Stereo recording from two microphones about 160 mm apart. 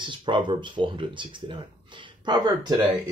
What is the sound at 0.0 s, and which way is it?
Speech, 30° right (ahead or behind).